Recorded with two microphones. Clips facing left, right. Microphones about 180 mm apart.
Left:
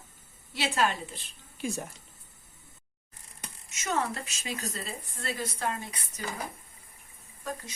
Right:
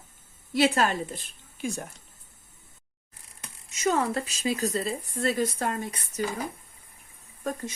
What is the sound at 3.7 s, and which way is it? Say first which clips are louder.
Speech: right 6 dB; 35° right (ahead or behind).